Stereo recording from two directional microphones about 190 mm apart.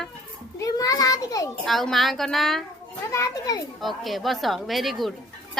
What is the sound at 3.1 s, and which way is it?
Speech, 15° left (ahead or behind).